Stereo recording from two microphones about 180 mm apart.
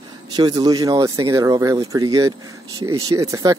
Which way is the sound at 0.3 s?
25° right (ahead or behind).